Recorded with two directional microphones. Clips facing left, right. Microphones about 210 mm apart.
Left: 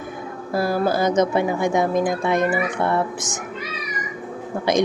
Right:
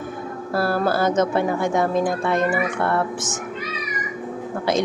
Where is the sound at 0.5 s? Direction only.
15° left (ahead or behind).